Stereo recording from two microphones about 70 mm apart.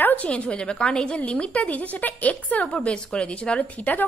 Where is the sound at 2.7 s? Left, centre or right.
Centre.